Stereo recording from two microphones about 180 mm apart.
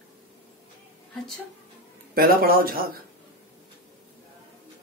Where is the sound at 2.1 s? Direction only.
55° right (ahead or behind).